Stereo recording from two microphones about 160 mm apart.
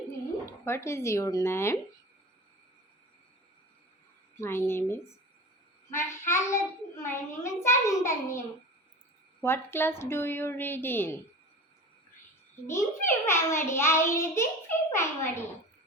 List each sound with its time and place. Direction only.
0.6 s a child's voice: 15° left (ahead or behind)
4.4 s a child's voice: 15° left (ahead or behind)
9.4 s a child's voice: 15° left (ahead or behind)
12.6 s a child's voice: 15° left (ahead or behind)